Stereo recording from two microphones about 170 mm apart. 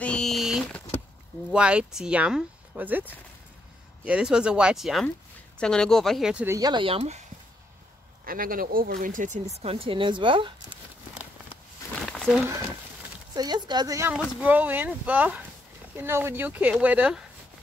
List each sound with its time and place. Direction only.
0.0 s a sound: 5° left (ahead or behind)
1.5 s speech: 5° right (ahead or behind)
6.5 s speech: 25° right (ahead or behind)
8.3 s speech: 55° right (ahead or behind)
9.6 s a woman's voice: 35° right (ahead or behind)
12.0 s a sound: centre (ahead or behind)
13.3 s a woman's voice: 25° right (ahead or behind); by 17.2 s 10° right (ahead or behind)